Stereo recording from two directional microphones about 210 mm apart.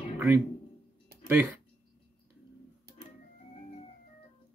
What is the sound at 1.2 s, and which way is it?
Speech, 10° right (ahead or behind).